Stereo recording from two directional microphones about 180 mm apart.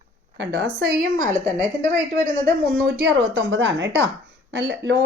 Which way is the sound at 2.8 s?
75° right (ahead or behind).